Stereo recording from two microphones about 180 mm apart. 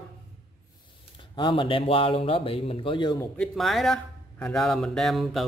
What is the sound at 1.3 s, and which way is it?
Speech, 25° left (ahead or behind).